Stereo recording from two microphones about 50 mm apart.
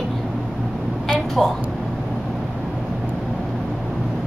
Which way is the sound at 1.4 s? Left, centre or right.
Centre.